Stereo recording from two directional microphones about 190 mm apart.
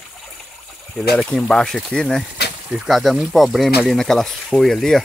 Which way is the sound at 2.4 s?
60° left (ahead or behind).